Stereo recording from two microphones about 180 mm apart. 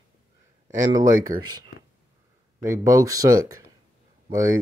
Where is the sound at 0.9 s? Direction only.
20° right (ahead or behind).